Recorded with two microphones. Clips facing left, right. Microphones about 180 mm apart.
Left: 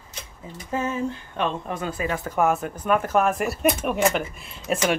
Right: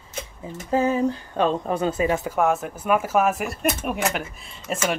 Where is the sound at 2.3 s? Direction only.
Centre (ahead or behind).